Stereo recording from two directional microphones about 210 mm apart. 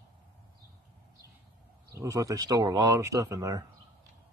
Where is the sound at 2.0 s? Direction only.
15° right (ahead or behind).